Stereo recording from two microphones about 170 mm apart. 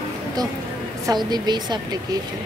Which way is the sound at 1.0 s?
25° right (ahead or behind).